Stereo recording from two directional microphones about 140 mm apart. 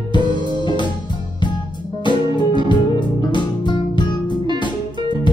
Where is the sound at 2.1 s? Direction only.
35° left (ahead or behind).